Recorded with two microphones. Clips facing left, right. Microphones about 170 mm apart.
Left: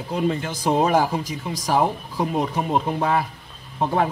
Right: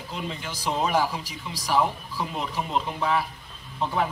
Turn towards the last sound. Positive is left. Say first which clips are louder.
# left 5 dB
turn(degrees=50)  # may be behind; listen again after turning